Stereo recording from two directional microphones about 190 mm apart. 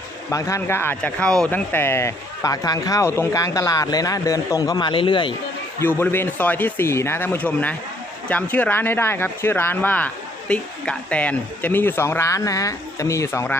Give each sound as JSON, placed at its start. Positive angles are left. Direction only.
{"t": 0.3, "sound": "speech", "side_deg": 15}
{"t": 5.8, "sound": "speech", "side_deg": 10}